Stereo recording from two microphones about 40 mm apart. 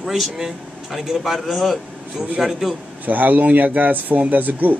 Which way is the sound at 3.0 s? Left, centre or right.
Right.